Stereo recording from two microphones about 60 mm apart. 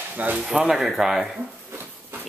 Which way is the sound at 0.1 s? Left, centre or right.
Right.